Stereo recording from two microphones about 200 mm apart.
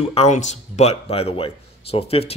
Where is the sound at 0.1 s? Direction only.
35° left (ahead or behind).